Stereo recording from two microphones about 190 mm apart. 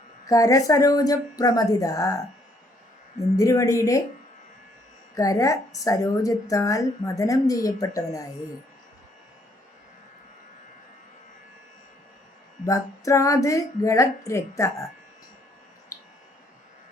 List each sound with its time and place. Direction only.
0.3 s a woman's voice: 15° left (ahead or behind)
3.3 s a woman's voice: 15° left (ahead or behind)
5.1 s a woman's voice: 15° left (ahead or behind)
12.6 s a woman's voice: 15° left (ahead or behind)